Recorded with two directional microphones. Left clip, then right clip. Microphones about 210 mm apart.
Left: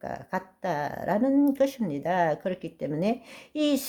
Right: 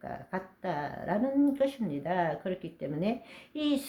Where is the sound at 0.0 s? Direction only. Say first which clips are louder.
Left 5 dB; 45° left (ahead or behind).